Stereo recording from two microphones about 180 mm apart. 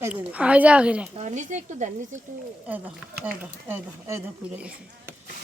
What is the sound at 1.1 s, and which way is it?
Speech, 40° right (ahead or behind).